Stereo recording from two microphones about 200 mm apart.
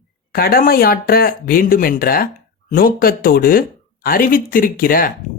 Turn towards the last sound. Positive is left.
turn(degrees=45)  # may be behind; listen again after turning